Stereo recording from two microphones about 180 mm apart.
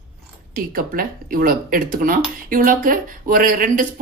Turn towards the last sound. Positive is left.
turn(degrees=-50)  # may be behind; listen again after turning